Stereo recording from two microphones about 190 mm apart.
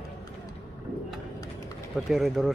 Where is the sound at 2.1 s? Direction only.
Centre (ahead or behind).